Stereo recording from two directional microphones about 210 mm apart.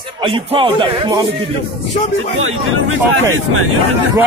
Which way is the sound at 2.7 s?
70° right (ahead or behind).